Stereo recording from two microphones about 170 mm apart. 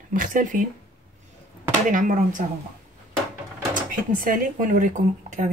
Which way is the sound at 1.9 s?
50° right (ahead or behind).